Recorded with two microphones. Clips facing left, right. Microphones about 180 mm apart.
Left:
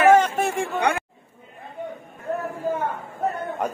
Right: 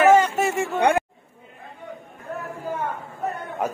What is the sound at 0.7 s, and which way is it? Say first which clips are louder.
Chatter: right 5 dB; 50° right (ahead or behind).